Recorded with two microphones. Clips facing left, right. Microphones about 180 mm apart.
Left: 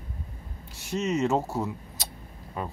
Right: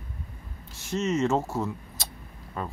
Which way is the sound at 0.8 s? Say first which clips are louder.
Right 1 dB; 15° left (ahead or behind).